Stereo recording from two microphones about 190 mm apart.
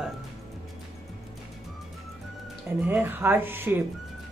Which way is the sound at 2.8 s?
10° right (ahead or behind).